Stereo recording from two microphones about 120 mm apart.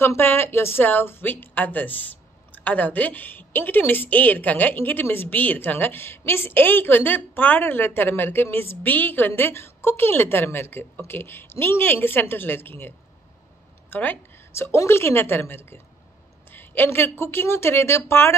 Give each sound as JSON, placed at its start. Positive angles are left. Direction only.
{"t": 0.0, "sound": "a woman's voice", "side_deg": 20}